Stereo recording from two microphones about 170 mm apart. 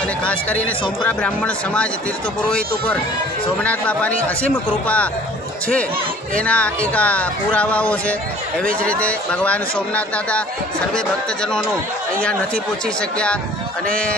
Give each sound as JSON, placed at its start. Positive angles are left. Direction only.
{"t": 0.2, "sound": "speech", "side_deg": 10}
{"t": 3.6, "sound": "speech", "side_deg": 10}
{"t": 6.3, "sound": "speech", "side_deg": 5}